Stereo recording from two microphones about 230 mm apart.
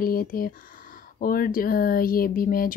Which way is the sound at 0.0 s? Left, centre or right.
Left.